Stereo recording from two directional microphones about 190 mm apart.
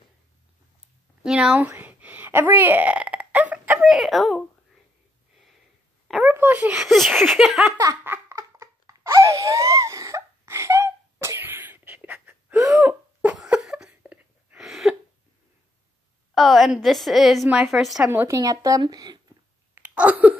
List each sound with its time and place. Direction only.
1.2 s speech: 5° right (ahead or behind)
6.2 s a woman's voice: 10° right (ahead or behind)
7.7 s laughter: 15° right (ahead or behind)
12.7 s a sound: 5° right (ahead or behind)
16.3 s a woman's voice: centre (ahead or behind)
18.2 s speech: 15° right (ahead or behind)
19.7 s a sound: 5° right (ahead or behind)